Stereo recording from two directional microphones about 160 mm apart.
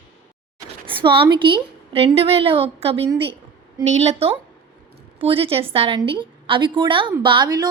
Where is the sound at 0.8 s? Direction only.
30° right (ahead or behind).